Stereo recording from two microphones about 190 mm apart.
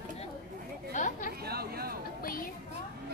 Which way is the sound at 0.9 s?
40° left (ahead or behind).